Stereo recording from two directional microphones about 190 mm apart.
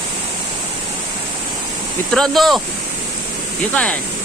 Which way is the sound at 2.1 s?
Centre (ahead or behind).